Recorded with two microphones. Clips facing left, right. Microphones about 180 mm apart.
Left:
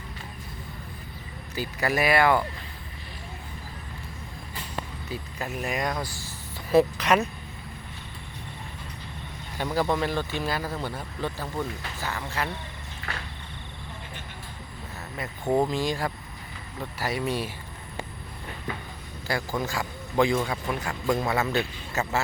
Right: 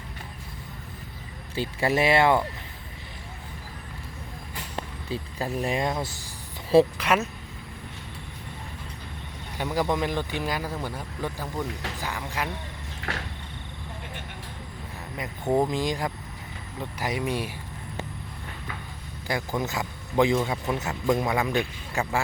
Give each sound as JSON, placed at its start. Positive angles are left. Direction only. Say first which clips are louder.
{"t": 1.5, "sound": "speech", "louder": "right 2 dB", "side_deg": -25}
{"t": 5.0, "sound": "speech", "louder": "right 7 dB", "side_deg": -30}
{"t": 6.9, "sound": "speech", "louder": "left 2 dB", "side_deg": -10}
{"t": 9.6, "sound": "speech", "louder": "even", "side_deg": -15}
{"t": 13.0, "sound": "a sound", "louder": "right 4 dB", "side_deg": -80}
{"t": 15.5, "sound": "speech", "louder": "even", "side_deg": -15}
{"t": 19.3, "sound": "speech", "louder": "even", "side_deg": -20}